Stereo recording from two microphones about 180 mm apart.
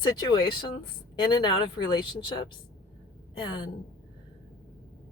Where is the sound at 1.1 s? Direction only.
25° left (ahead or behind).